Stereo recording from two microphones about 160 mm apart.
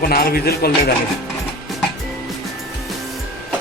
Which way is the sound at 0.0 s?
70° left (ahead or behind).